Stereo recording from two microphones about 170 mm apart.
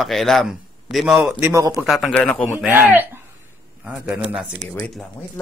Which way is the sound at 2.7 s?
10° right (ahead or behind).